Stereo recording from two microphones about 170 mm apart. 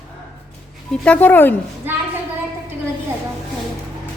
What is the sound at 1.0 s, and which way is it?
Speech, 10° left (ahead or behind).